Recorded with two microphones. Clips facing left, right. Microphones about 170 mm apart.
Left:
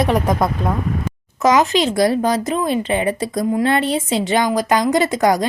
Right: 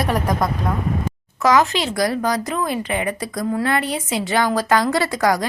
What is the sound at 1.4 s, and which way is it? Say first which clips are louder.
Speech: left 2 dB; 20° left (ahead or behind).